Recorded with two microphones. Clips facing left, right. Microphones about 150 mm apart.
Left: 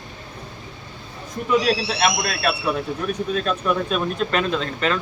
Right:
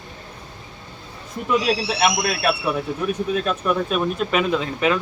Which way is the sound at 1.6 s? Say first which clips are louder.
Even; 10° right (ahead or behind).